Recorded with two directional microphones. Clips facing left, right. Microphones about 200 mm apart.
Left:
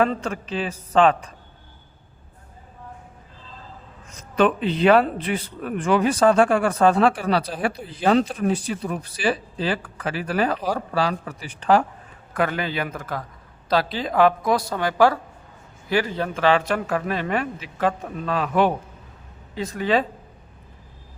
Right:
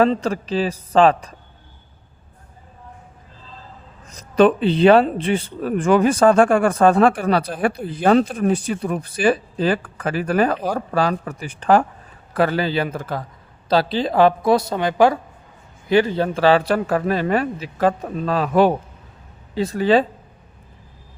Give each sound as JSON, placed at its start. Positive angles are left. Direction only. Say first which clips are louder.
{"t": 0.0, "sound": "speech", "louder": "right 5 dB", "side_deg": -35}
{"t": 4.1, "sound": "speech", "louder": "right 5 dB", "side_deg": -35}
{"t": 12.3, "sound": "a woman's voice", "louder": "right 5 dB", "side_deg": -35}